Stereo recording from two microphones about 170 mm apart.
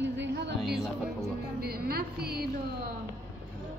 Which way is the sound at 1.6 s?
65° right (ahead or behind).